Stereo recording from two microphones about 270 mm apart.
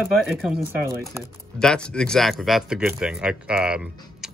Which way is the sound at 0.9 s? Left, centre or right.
Centre.